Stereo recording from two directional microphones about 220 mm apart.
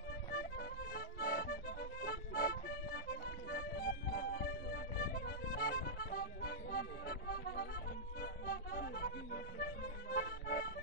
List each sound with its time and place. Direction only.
0.3 s accordion: 45° left (ahead or behind)
8.2 s music: 40° left (ahead or behind)